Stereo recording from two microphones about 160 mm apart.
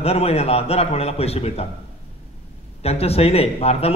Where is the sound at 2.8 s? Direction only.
40° left (ahead or behind).